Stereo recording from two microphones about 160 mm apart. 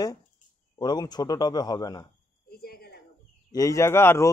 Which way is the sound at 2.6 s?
70° left (ahead or behind).